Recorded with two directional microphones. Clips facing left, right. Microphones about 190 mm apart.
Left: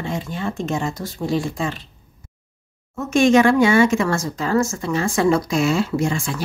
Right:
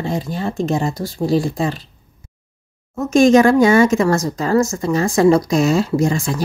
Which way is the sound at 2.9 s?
40° right (ahead or behind).